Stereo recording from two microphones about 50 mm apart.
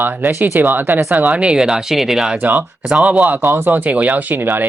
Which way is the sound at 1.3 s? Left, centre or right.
Centre.